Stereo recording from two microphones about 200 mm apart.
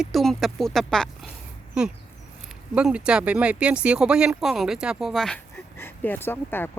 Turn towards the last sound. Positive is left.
turn(degrees=10)  # may be behind; listen again after turning